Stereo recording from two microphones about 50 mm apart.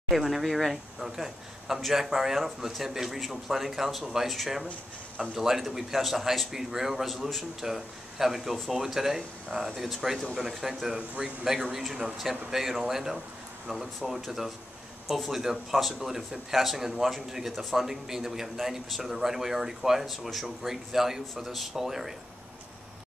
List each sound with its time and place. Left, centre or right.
0.1 s a man's voice: centre
11.0 s a man's voice: right
11.4 s a man's voice: centre